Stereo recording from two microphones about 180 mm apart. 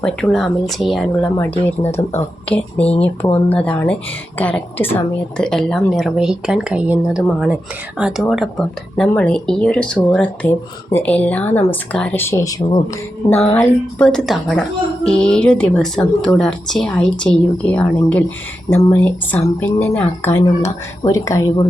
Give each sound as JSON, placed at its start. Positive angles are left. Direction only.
{"t": 0.0, "sound": "a woman's voice", "side_deg": 5}
{"t": 1.4, "sound": "speech", "side_deg": 10}
{"t": 1.9, "sound": "speech", "side_deg": 35}
{"t": 2.5, "sound": "a woman's voice", "side_deg": 5}
{"t": 13.6, "sound": "a woman's voice", "side_deg": 5}